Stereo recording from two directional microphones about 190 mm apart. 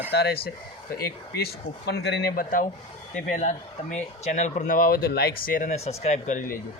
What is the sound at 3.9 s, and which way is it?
Speech, 40° left (ahead or behind).